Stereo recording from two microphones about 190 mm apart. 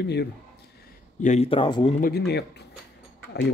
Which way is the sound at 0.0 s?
60° left (ahead or behind).